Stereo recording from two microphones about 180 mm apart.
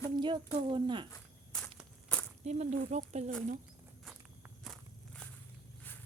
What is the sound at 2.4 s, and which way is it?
Speech, 40° right (ahead or behind).